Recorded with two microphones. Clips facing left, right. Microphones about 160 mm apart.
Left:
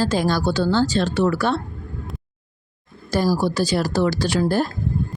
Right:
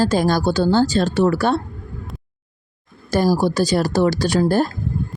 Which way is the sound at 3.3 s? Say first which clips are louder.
Right 3 dB; 45° right (ahead or behind).